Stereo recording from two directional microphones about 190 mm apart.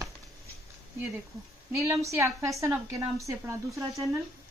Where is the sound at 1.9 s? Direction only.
15° right (ahead or behind).